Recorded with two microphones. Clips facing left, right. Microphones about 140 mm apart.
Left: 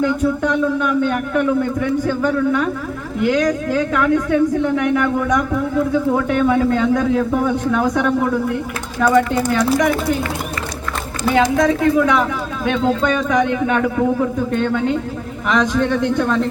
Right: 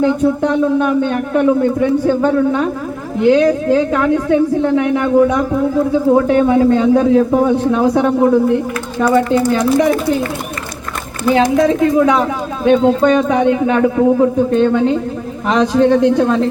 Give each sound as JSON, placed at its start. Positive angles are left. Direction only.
{"t": 0.0, "sound": "speech", "side_deg": -30}
{"t": 11.5, "sound": "speech", "side_deg": -30}